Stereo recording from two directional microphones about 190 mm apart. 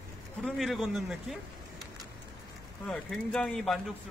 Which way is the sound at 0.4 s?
Centre (ahead or behind).